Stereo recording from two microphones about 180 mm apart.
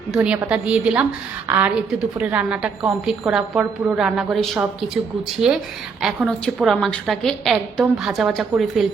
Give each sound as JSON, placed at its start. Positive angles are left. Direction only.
{"t": 0.1, "sound": "a woman's voice", "side_deg": -5}